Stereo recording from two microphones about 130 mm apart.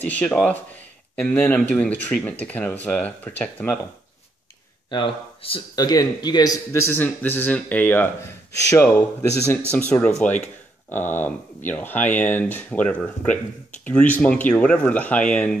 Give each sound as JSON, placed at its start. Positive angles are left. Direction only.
{"t": 0.0, "sound": "speech", "side_deg": 10}
{"t": 4.9, "sound": "speech", "side_deg": 40}
{"t": 5.8, "sound": "speech", "side_deg": 30}